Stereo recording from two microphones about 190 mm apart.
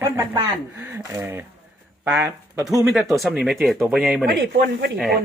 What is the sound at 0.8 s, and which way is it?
Speech, 10° right (ahead or behind).